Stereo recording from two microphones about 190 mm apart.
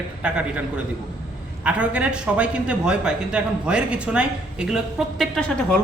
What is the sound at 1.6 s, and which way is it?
A man's voice, 5° right (ahead or behind).